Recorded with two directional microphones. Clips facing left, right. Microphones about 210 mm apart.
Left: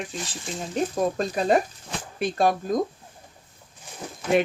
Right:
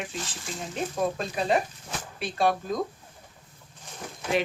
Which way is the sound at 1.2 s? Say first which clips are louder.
Left 4 dB; 45° left (ahead or behind).